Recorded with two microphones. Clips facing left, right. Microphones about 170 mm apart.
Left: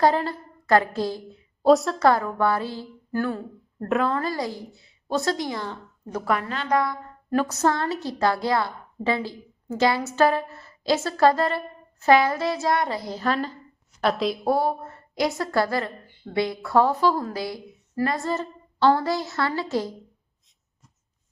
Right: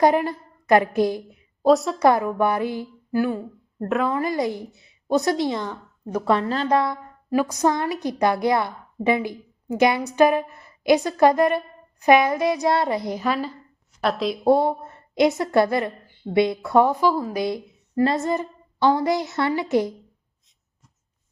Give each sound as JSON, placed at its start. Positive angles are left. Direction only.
{"t": 0.0, "sound": "a woman's voice", "side_deg": -20}
{"t": 1.6, "sound": "a woman's voice", "side_deg": 0}
{"t": 2.0, "sound": "a woman's voice", "side_deg": -20}
{"t": 3.8, "sound": "a woman's voice", "side_deg": 0}
{"t": 4.1, "sound": "a woman's voice", "side_deg": -20}
{"t": 6.2, "sound": "a woman's voice", "side_deg": -25}
{"t": 7.3, "sound": "a woman's voice", "side_deg": -10}
{"t": 14.4, "sound": "a woman's voice", "side_deg": -20}
{"t": 17.4, "sound": "a woman's voice", "side_deg": -20}